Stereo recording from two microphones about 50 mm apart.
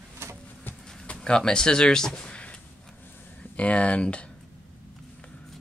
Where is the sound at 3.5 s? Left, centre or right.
Left.